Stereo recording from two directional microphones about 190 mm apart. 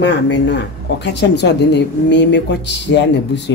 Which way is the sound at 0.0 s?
65° left (ahead or behind).